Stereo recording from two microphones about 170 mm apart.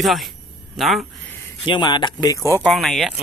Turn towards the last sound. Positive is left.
turn(degrees=0)  # may be behind; listen again after turning